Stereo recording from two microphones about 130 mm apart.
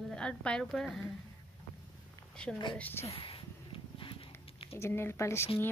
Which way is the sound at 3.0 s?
50° left (ahead or behind).